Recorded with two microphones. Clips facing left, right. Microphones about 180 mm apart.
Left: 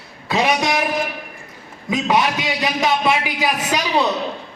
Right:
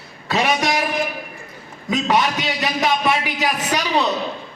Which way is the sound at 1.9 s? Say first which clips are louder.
Left 1 dB; 10° left (ahead or behind).